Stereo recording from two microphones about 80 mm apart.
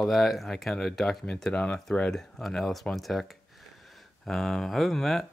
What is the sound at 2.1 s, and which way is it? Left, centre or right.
Speech, centre.